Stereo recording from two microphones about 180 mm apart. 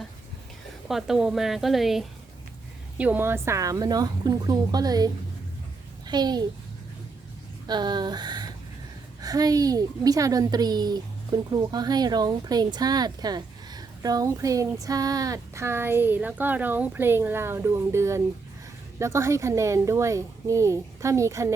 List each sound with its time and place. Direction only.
0.9 s a woman's voice: centre (ahead or behind); by 6.4 s 25° right (ahead or behind)
7.7 s a woman's voice: 25° right (ahead or behind)